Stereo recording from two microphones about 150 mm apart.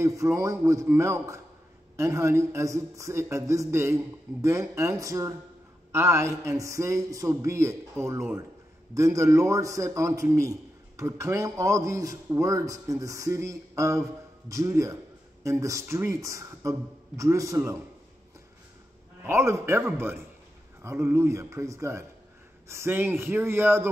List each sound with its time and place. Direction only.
0.0 s speech: 20° right (ahead or behind)
19.2 s a man's voice: 15° right (ahead or behind)